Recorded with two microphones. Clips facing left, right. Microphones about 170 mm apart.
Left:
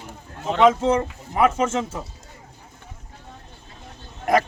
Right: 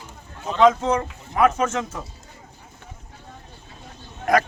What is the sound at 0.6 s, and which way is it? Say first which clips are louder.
A man's voice: even; 25° left (ahead or behind).